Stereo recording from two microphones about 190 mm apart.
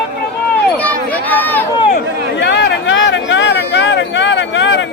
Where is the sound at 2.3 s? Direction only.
70° left (ahead or behind).